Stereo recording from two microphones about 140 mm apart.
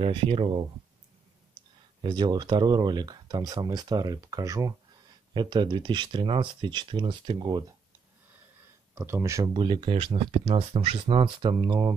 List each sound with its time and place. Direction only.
0.0 s speech: 40° right (ahead or behind)
8.9 s speech: 20° right (ahead or behind)
9.4 s speech: 35° right (ahead or behind)